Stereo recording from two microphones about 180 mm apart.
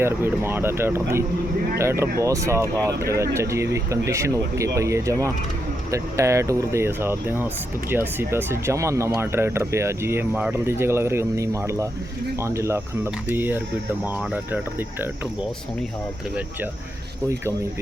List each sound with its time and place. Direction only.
0.0 s speech: 15° right (ahead or behind)